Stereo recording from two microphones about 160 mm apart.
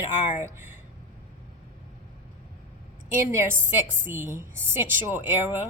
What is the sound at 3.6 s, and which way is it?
Speech, 55° right (ahead or behind).